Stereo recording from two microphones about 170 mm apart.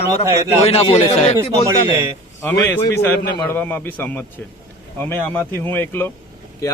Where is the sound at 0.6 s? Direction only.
35° left (ahead or behind).